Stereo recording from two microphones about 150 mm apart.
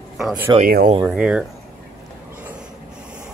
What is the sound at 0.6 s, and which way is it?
Speech, 75° right (ahead or behind).